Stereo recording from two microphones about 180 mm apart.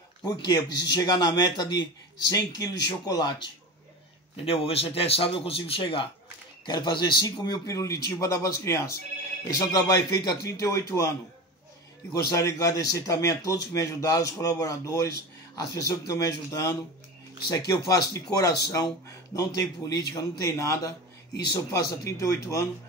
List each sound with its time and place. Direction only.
0.2 s a man's voice: 20° left (ahead or behind)
4.5 s a man's voice: 30° left (ahead or behind)
12.3 s a man's voice: 20° left (ahead or behind)